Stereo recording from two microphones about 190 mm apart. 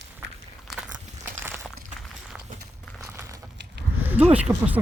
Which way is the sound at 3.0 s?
15° right (ahead or behind).